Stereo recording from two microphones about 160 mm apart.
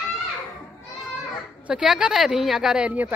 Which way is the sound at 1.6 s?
5° right (ahead or behind).